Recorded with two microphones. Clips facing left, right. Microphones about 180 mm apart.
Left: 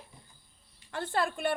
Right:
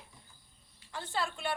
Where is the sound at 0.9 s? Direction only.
55° left (ahead or behind).